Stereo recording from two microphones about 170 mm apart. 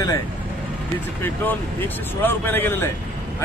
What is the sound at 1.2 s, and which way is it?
Speech, 10° left (ahead or behind).